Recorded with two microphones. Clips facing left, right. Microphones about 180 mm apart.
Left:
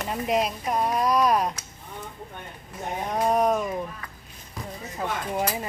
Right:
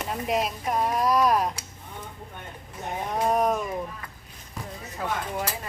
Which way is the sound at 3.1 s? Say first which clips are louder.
Left 1 dB; centre (ahead or behind).